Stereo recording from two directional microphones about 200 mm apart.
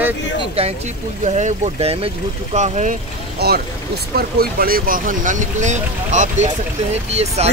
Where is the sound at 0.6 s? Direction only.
30° right (ahead or behind).